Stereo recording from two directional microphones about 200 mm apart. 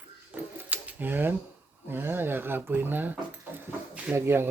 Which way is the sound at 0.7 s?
10° right (ahead or behind).